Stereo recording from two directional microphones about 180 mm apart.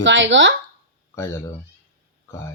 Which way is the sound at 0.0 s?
90° right.